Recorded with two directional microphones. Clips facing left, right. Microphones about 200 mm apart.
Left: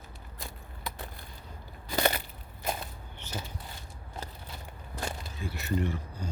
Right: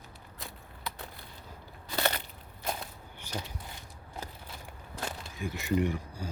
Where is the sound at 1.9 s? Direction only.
10° left (ahead or behind).